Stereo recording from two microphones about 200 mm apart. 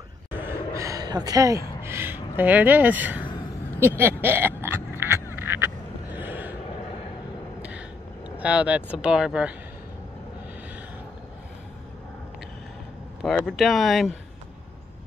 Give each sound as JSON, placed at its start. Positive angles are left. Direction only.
{"t": 0.3, "sound": "a sound", "side_deg": -10}
{"t": 1.8, "sound": "speech", "side_deg": -10}
{"t": 3.8, "sound": "a sound", "side_deg": -10}
{"t": 5.3, "sound": "fowl", "side_deg": -10}
{"t": 8.4, "sound": "speech", "side_deg": -5}
{"t": 13.2, "sound": "speech", "side_deg": 0}